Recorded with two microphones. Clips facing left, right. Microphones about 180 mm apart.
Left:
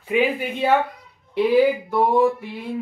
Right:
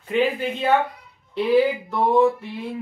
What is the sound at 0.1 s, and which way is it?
Speech, 10° left (ahead or behind).